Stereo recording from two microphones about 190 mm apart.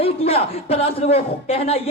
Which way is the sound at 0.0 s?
30° left (ahead or behind).